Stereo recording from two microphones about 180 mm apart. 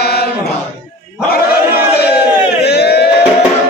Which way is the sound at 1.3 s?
60° left (ahead or behind).